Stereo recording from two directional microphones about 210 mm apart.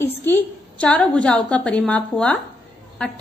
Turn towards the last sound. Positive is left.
turn(degrees=5)  # may be behind; listen again after turning